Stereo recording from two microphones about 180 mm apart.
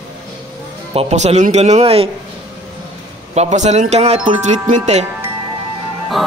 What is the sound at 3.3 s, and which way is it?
Speech, 40° right (ahead or behind).